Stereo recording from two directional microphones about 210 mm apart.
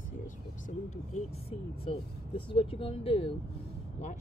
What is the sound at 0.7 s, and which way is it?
Speech, 35° left (ahead or behind).